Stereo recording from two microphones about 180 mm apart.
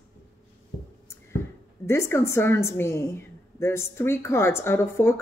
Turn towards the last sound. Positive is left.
turn(degrees=15)  # may be behind; listen again after turning